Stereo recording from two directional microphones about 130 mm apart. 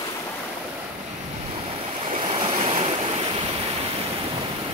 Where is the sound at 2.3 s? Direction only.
45° right (ahead or behind).